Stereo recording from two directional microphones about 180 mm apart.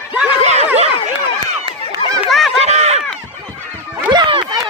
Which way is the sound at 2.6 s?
35° right (ahead or behind).